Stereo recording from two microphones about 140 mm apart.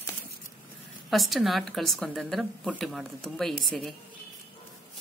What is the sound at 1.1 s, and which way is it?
A woman's voice, centre (ahead or behind).